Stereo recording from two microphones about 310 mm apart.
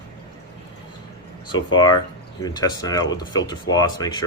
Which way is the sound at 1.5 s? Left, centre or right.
Centre.